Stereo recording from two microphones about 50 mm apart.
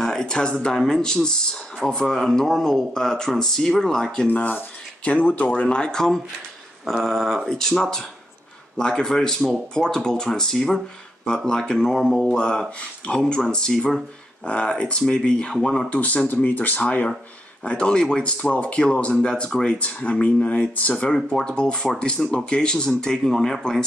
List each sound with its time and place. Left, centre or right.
0.0 s speech: centre
4.3 s speech: left; by 6.2 s centre
6.8 s speech: centre
12.4 s speech: centre
15.9 s speech: left
21.1 s speech: centre